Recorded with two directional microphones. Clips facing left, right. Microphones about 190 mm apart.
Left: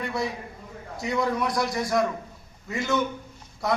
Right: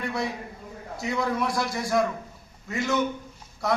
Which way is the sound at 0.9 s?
Centre (ahead or behind).